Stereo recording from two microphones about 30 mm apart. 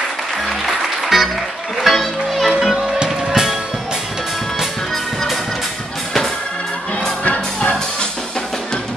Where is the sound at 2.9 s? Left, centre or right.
Right.